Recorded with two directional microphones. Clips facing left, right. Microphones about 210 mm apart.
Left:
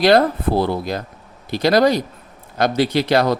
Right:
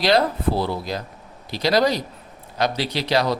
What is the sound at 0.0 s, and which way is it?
Speech, 55° left (ahead or behind).